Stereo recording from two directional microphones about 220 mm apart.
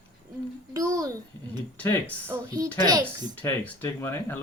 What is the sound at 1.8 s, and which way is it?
Speech, 5° left (ahead or behind).